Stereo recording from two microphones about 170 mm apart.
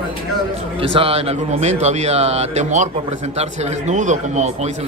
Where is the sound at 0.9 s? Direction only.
35° right (ahead or behind).